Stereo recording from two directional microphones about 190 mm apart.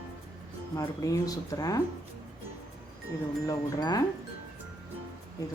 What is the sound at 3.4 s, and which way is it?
Wind chime, 20° left (ahead or behind).